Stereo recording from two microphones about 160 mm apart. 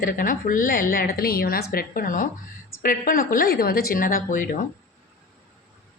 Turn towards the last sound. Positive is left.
turn(degrees=55)  # may be behind; listen again after turning